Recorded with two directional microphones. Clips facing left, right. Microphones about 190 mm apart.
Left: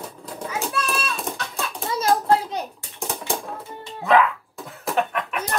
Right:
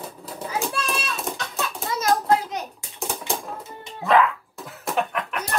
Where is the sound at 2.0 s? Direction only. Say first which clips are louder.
Left 1 dB; 30° left (ahead or behind).